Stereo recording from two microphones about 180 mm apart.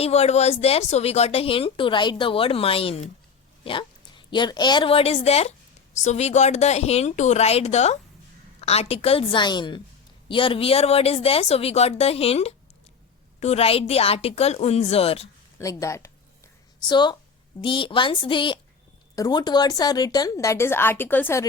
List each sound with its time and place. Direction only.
0.0 s a woman's voice: 35° left (ahead or behind)
15.5 s a woman's voice: 20° left (ahead or behind)